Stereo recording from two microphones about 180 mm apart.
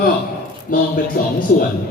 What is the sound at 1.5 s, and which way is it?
Speech, 50° left (ahead or behind).